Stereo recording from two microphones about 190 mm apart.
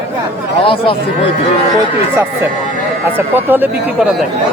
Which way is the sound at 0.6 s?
30° left (ahead or behind).